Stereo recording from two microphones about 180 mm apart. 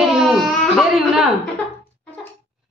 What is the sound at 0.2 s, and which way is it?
Baby cry, centre (ahead or behind).